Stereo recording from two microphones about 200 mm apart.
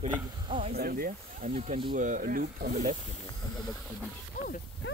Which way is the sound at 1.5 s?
30° right (ahead or behind).